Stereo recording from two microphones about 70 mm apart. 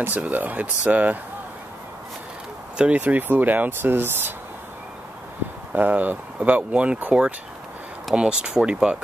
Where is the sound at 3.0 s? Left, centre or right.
Right.